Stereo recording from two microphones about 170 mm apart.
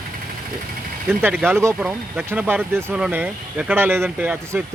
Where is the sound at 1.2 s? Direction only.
10° right (ahead or behind).